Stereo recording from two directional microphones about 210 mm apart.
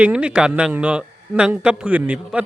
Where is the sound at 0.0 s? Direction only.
5° right (ahead or behind).